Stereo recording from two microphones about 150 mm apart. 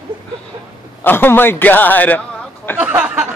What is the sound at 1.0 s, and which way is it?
A man's voice, 15° left (ahead or behind).